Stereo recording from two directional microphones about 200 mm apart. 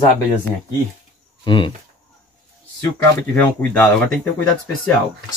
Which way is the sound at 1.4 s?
25° left (ahead or behind).